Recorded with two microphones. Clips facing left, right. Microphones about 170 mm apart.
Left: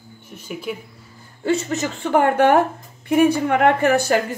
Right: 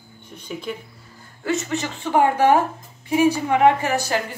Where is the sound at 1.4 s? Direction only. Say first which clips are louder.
Left 3 dB; 40° left (ahead or behind).